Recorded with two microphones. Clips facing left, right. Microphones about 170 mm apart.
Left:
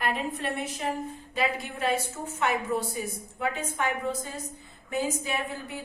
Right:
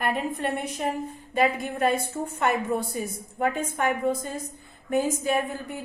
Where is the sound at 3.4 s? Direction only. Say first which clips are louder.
Right 4 dB; 50° right (ahead or behind).